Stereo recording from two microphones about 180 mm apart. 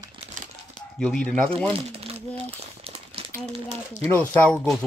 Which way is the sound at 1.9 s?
35° right (ahead or behind).